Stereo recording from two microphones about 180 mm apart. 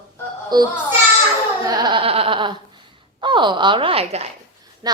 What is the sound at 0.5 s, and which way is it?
Speech, 25° right (ahead or behind).